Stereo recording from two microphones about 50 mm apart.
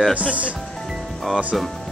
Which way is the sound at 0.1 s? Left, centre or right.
Right.